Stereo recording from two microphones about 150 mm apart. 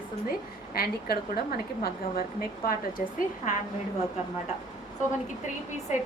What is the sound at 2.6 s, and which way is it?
Speech, 65° left (ahead or behind).